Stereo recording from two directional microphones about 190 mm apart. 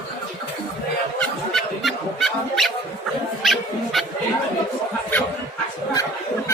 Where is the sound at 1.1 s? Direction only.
Centre (ahead or behind).